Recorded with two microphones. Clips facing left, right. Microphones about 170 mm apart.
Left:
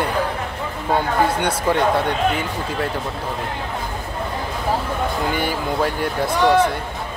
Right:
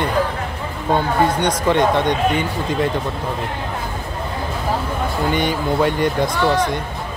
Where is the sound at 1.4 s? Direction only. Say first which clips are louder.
Right 2 dB; 5° left (ahead or behind).